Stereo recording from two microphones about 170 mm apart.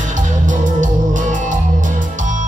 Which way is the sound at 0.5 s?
50° right (ahead or behind).